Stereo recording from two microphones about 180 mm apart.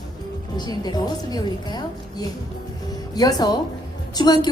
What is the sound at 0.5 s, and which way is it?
A woman's voice, 20° left (ahead or behind).